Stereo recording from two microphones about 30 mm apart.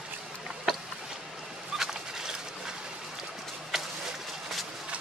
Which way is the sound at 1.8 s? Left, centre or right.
Centre.